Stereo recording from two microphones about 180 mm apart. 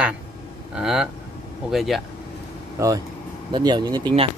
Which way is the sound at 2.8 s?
15° right (ahead or behind).